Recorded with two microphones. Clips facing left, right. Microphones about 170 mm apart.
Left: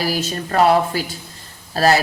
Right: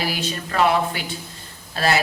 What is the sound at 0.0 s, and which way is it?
Speech, 40° left (ahead or behind).